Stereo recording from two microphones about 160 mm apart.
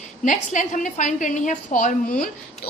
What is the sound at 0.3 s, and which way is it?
A woman's voice, 50° left (ahead or behind).